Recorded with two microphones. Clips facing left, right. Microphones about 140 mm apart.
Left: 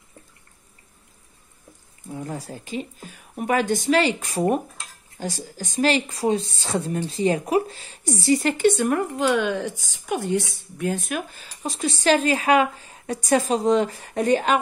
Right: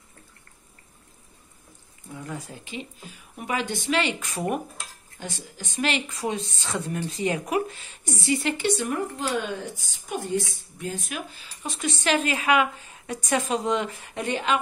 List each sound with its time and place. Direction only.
2.1 s speech: 35° left (ahead or behind)